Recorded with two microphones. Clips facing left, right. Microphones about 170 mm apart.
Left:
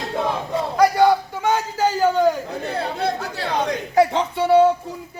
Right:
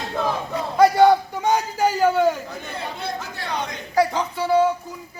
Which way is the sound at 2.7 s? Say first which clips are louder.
Left 6 dB; 65° left (ahead or behind).